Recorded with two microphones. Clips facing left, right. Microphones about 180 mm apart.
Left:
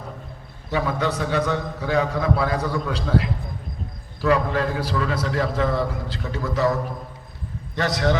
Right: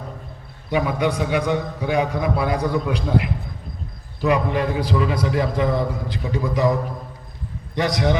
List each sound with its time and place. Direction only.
0.7 s a man's voice: 15° right (ahead or behind)
7.8 s a man's voice: 15° right (ahead or behind)